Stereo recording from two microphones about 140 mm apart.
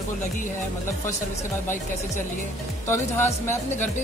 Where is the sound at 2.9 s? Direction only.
15° left (ahead or behind).